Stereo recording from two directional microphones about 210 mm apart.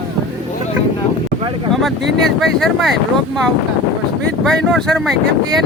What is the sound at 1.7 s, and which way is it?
A man's voice, centre (ahead or behind).